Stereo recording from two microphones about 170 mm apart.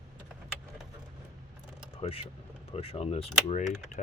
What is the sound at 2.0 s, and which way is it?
Speech, 35° left (ahead or behind).